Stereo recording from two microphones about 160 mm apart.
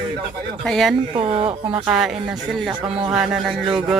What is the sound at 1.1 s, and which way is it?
Speech, 35° right (ahead or behind).